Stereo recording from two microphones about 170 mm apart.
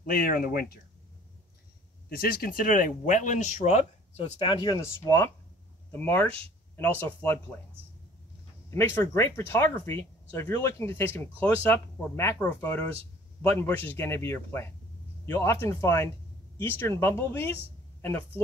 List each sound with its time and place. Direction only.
0.0 s speech: 55° left (ahead or behind)
2.0 s speech: 60° left (ahead or behind); by 3.8 s 45° left (ahead or behind)
4.2 s speech: 30° left (ahead or behind); by 7.3 s 10° left (ahead or behind)
8.6 s speech: 15° left (ahead or behind)